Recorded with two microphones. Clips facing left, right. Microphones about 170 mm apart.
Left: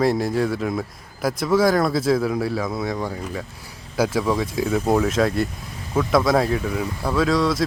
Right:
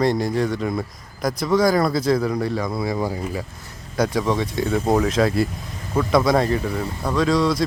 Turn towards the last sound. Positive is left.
turn(degrees=0)  # may be behind; listen again after turning